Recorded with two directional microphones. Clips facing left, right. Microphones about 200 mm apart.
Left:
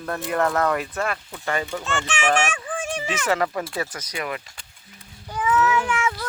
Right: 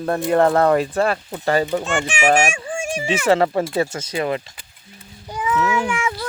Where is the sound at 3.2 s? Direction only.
30° right (ahead or behind).